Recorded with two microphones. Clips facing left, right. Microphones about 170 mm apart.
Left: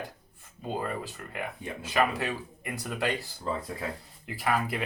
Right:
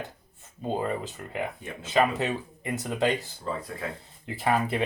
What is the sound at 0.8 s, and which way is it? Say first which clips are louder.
Speech: right 4 dB; 20° right (ahead or behind).